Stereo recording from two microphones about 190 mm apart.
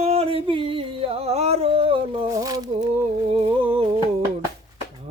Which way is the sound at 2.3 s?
20° right (ahead or behind).